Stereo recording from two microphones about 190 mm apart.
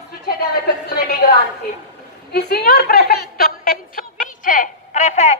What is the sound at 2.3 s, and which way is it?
A woman's voice, 55° left (ahead or behind).